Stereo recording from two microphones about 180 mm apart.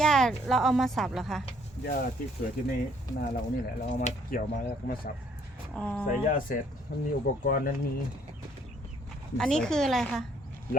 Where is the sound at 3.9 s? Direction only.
40° left (ahead or behind).